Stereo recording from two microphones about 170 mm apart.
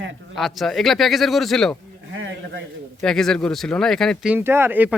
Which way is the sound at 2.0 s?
90° right.